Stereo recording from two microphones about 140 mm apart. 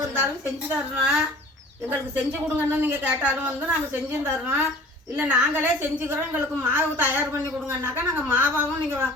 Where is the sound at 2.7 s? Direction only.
15° right (ahead or behind).